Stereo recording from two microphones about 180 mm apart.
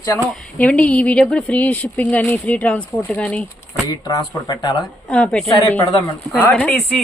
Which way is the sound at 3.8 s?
20° left (ahead or behind).